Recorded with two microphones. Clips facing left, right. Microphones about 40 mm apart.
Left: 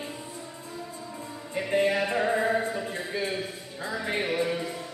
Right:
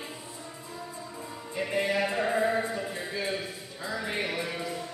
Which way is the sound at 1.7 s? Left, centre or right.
Left.